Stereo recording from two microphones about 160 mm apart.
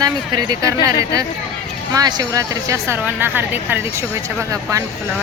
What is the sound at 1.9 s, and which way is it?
Speech, 25° right (ahead or behind).